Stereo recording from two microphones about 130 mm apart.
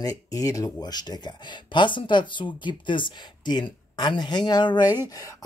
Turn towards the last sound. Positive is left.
turn(degrees=35)  # may be behind; listen again after turning